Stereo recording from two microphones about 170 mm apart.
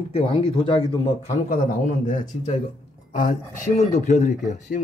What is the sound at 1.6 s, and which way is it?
Speech, 50° left (ahead or behind).